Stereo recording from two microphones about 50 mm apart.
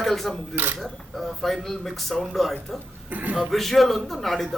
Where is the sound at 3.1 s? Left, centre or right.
Right.